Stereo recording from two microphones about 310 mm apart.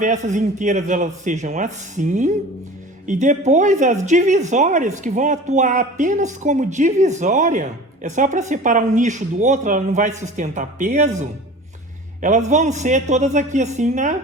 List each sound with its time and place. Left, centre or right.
0.0 s a woman's voice: right